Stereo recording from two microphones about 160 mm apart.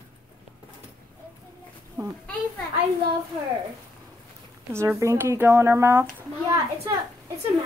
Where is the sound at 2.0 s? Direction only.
20° right (ahead or behind).